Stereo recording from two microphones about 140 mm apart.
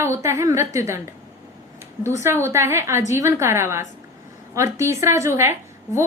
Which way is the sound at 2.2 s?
20° right (ahead or behind).